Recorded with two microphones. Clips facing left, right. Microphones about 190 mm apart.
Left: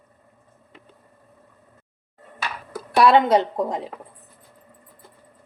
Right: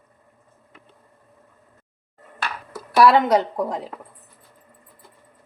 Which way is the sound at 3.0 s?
25° left (ahead or behind).